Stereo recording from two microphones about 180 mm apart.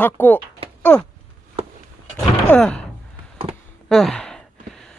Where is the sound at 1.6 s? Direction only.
35° right (ahead or behind).